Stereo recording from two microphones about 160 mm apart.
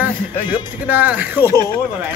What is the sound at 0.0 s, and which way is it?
Speech, 10° right (ahead or behind).